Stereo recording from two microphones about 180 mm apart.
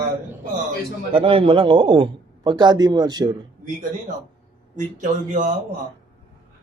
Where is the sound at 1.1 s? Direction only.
30° right (ahead or behind).